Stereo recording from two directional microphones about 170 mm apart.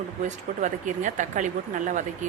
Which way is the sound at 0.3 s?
45° right (ahead or behind).